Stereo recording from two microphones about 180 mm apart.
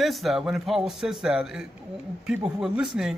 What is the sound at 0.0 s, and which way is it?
Speech, centre (ahead or behind).